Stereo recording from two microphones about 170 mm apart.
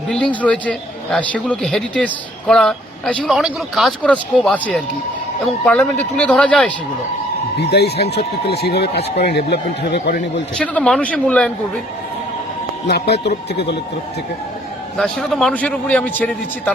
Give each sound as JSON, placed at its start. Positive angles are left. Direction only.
{"t": 0.1, "sound": "a man's voice", "side_deg": 5}
{"t": 7.6, "sound": "speech", "side_deg": 75}
{"t": 10.6, "sound": "a man's voice", "side_deg": 5}
{"t": 13.2, "sound": "speech", "side_deg": 80}
{"t": 14.9, "sound": "a man's voice", "side_deg": 5}